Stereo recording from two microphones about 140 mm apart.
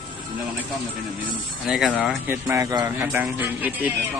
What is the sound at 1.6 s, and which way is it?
Speech, 5° right (ahead or behind).